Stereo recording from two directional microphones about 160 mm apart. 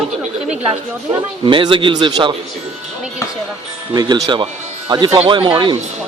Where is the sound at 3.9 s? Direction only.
25° right (ahead or behind).